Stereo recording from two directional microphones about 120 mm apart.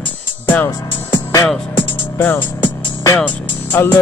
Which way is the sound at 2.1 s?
20° left (ahead or behind).